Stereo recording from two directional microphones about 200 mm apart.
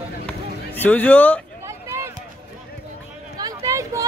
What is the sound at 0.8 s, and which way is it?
Speech, 10° left (ahead or behind).